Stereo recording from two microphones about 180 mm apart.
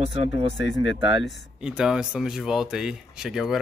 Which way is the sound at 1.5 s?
5° right (ahead or behind).